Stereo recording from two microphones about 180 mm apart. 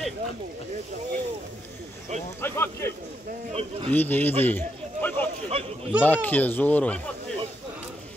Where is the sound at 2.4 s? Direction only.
15° left (ahead or behind).